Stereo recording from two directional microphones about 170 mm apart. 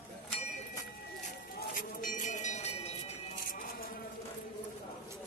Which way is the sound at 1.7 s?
55° left (ahead or behind).